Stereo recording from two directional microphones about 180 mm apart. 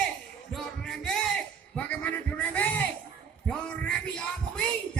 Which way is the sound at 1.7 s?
10° left (ahead or behind).